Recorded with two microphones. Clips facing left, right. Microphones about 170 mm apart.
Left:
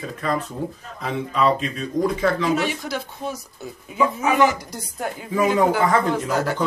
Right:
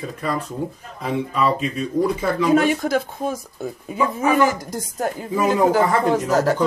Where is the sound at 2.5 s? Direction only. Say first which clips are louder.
Right 6 dB; 50° right (ahead or behind).